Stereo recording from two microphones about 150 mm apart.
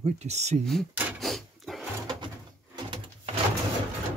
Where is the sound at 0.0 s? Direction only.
50° right (ahead or behind).